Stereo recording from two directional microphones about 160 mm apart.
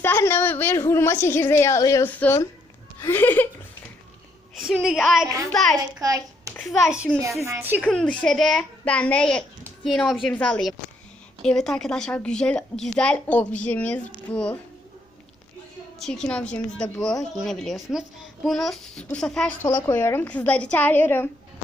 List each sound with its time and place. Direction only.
0.0 s a woman's voice: 15° left (ahead or behind)
4.5 s a woman's voice: centre (ahead or behind)
6.0 s a child's voice: 20° right (ahead or behind)
6.6 s a woman's voice: centre (ahead or behind)
7.2 s a woman's voice: 20° right (ahead or behind)
7.8 s a woman's voice: 5° left (ahead or behind)
16.0 s a woman's voice: 5° left (ahead or behind)
19.6 s a woman's voice: 15° left (ahead or behind)